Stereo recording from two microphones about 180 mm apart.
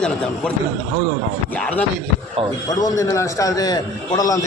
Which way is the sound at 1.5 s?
5° left (ahead or behind).